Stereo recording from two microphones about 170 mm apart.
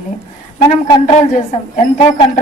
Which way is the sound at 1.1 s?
40° left (ahead or behind).